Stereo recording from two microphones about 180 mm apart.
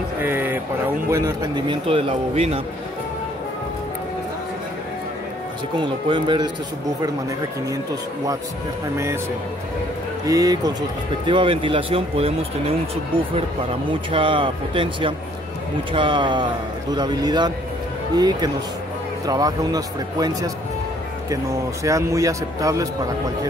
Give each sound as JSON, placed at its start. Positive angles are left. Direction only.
{"t": 0.2, "sound": "speech", "side_deg": -10}
{"t": 1.7, "sound": "speech", "side_deg": -30}
{"t": 6.0, "sound": "speech", "side_deg": -25}
{"t": 7.7, "sound": "speech", "side_deg": -20}
{"t": 10.2, "sound": "speech", "side_deg": -20}
{"t": 21.8, "sound": "speech", "side_deg": -20}